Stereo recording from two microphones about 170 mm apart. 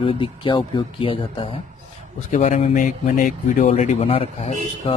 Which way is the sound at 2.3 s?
45° left (ahead or behind).